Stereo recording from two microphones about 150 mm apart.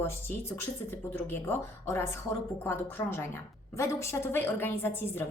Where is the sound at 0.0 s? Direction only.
15° left (ahead or behind).